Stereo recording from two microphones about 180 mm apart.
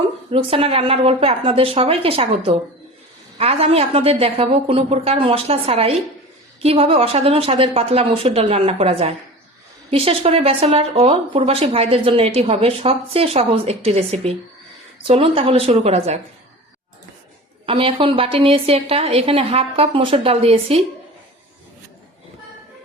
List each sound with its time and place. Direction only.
0.3 s speech: 30° right (ahead or behind)
17.7 s speech: 30° right (ahead or behind)